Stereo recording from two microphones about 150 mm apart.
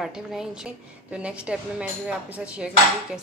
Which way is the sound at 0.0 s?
5° right (ahead or behind).